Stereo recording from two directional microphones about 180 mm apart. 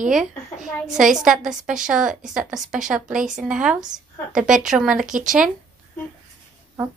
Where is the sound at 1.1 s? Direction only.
5° right (ahead or behind).